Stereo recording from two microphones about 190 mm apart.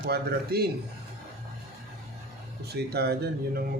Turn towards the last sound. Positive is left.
turn(degrees=-55)  # may be behind; listen again after turning